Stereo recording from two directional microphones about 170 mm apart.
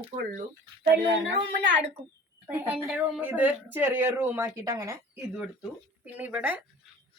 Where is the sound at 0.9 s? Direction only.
90° right.